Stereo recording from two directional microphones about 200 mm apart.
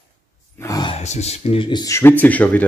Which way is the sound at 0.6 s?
20° left (ahead or behind).